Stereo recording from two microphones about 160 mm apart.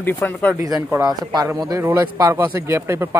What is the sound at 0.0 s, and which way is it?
Speech, 10° left (ahead or behind).